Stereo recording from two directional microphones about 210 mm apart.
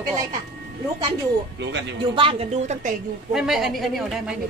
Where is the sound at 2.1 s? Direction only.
25° right (ahead or behind).